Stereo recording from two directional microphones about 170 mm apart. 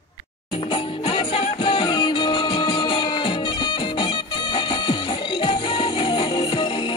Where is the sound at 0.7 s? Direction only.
30° left (ahead or behind).